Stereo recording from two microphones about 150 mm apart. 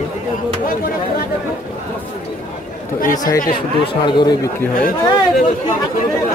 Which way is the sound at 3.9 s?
30° left (ahead or behind).